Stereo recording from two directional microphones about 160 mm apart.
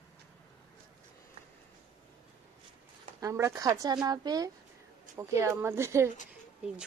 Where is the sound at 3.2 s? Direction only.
20° right (ahead or behind).